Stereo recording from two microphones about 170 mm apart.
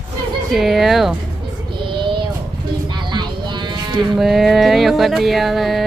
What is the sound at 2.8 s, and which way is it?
Livestock, 25° right (ahead or behind).